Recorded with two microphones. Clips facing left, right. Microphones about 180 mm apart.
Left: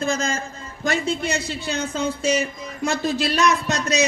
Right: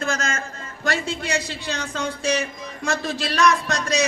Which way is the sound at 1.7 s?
5° left (ahead or behind).